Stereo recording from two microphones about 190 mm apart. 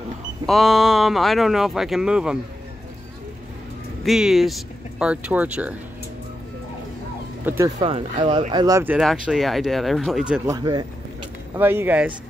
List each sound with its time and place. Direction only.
0.5 s speech: centre (ahead or behind)
4.0 s speech: centre (ahead or behind)
7.4 s speech: 15° right (ahead or behind)
7.8 s speech: 25° right (ahead or behind)
8.9 s speech: 5° right (ahead or behind)
10.5 s speech: 20° right (ahead or behind)
11.5 s speech: 10° right (ahead or behind)